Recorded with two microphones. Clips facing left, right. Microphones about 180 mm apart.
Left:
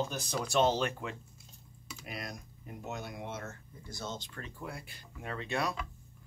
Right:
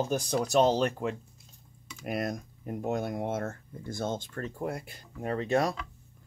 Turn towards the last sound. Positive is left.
turn(degrees=-40)  # may be behind; listen again after turning